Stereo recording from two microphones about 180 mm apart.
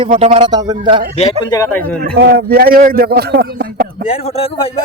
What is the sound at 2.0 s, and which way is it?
Speech, 60° right (ahead or behind).